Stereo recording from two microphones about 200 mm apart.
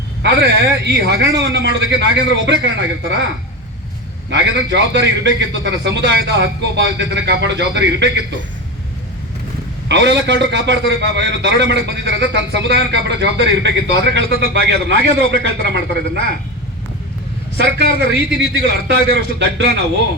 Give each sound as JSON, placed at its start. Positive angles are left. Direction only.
{"t": 0.2, "sound": "a man's voice", "side_deg": -55}
{"t": 4.3, "sound": "a man's voice", "side_deg": -60}
{"t": 9.9, "sound": "a man's voice", "side_deg": -60}
{"t": 17.6, "sound": "a man's voice", "side_deg": -55}